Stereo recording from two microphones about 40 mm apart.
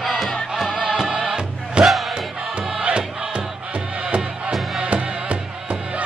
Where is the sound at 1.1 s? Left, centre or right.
Right.